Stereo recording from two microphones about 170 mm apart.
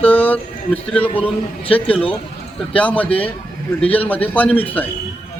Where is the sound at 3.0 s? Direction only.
35° left (ahead or behind).